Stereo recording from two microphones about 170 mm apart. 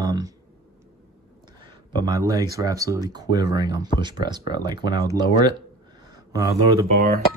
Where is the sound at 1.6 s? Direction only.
25° right (ahead or behind).